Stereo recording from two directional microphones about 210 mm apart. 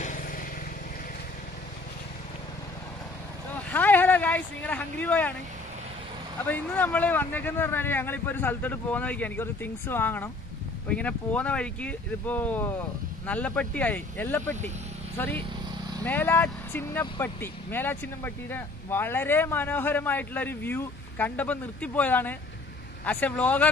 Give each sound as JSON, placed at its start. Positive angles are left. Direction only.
{"t": 0.0, "sound": "vehicle", "side_deg": 40}
{"t": 3.5, "sound": "a sound", "side_deg": 10}
{"t": 6.4, "sound": "speech", "side_deg": 10}